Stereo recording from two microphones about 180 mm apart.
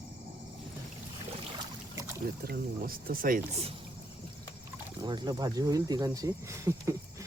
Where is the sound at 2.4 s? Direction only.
55° right (ahead or behind).